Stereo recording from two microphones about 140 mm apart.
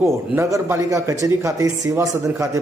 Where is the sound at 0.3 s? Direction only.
20° right (ahead or behind).